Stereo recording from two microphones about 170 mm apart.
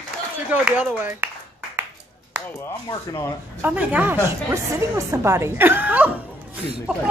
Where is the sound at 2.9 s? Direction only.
15° left (ahead or behind).